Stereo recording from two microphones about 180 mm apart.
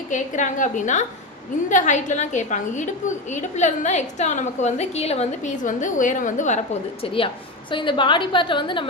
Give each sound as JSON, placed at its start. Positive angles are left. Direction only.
{"t": 0.1, "sound": "a woman's voice", "side_deg": 45}
{"t": 7.0, "sound": "a woman's voice", "side_deg": 30}